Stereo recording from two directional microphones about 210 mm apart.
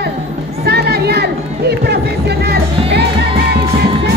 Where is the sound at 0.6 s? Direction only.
50° right (ahead or behind).